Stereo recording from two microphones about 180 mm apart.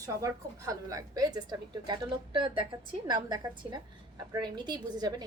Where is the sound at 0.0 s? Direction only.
15° right (ahead or behind).